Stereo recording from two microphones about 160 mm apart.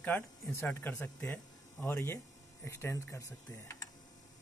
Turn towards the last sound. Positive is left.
turn(degrees=20)  # may be behind; listen again after turning